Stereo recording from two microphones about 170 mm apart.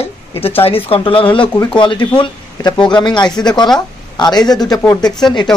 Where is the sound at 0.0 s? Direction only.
35° left (ahead or behind).